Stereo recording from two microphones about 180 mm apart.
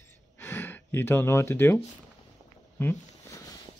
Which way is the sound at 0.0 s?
15° left (ahead or behind).